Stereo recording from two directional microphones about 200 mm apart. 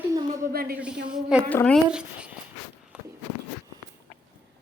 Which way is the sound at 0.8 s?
5° right (ahead or behind).